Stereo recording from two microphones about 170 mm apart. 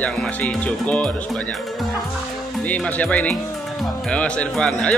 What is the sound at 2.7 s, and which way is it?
Speech, 10° left (ahead or behind).